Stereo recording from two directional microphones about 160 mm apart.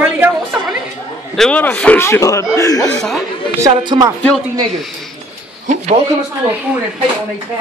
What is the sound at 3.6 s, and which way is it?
Speech, 20° right (ahead or behind).